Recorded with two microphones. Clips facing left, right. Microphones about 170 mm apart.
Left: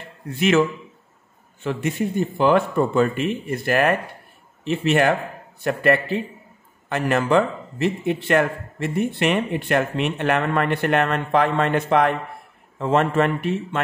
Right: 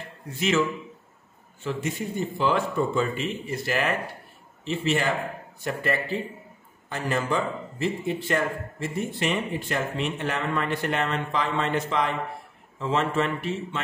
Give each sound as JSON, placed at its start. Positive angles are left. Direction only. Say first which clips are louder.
{"t": 0.4, "sound": "a man's voice", "louder": "left 6 dB", "side_deg": 60}